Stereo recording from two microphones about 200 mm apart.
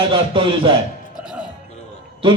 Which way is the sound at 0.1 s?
25° right (ahead or behind).